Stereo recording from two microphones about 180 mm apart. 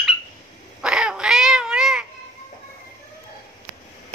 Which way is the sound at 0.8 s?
5° right (ahead or behind).